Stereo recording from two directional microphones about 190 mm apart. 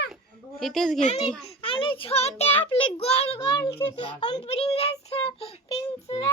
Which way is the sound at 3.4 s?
15° left (ahead or behind).